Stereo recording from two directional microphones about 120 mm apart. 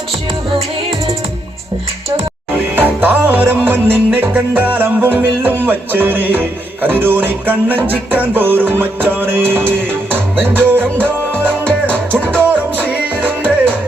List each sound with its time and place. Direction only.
2.7 s music: 15° right (ahead or behind)